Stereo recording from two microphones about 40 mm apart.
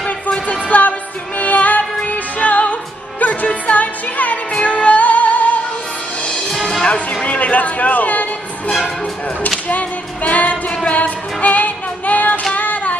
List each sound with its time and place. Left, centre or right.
0.0 s music: left
6.5 s music: centre
6.8 s music: left
9.7 s music: left
12.5 s a sound: left